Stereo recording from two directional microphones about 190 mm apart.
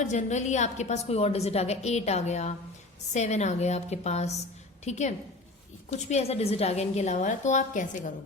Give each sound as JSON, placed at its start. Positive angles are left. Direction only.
{"t": 0.0, "sound": "a woman's voice", "side_deg": 40}